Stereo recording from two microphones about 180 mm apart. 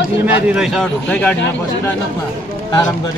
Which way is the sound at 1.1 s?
10° left (ahead or behind).